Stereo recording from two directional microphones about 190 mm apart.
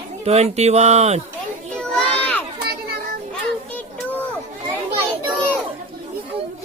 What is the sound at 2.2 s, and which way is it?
Children playing, 5° left (ahead or behind).